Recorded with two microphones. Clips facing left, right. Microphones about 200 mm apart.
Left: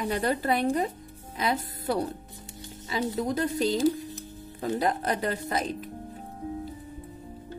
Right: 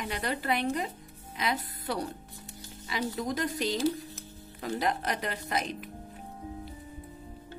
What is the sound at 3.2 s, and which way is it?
Speech, 30° left (ahead or behind).